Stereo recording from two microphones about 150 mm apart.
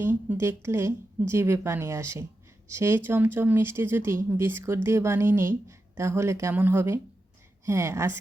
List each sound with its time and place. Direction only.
0.0 s speech: 15° right (ahead or behind)